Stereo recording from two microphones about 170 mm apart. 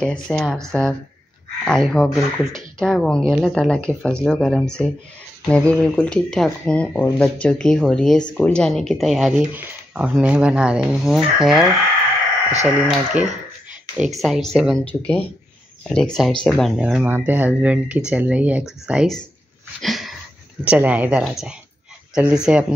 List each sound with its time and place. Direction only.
0.0 s speech: 5° left (ahead or behind)
13.1 s speech: 45° right (ahead or behind)
13.9 s speech: 5° right (ahead or behind)
19.8 s a sound: centre (ahead or behind)
20.6 s speech: 10° right (ahead or behind)